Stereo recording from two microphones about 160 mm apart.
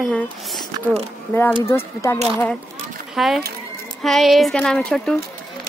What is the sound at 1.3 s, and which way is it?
Speech, 10° left (ahead or behind).